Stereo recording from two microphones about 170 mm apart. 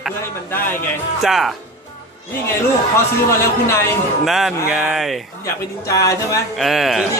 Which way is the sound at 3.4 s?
15° left (ahead or behind).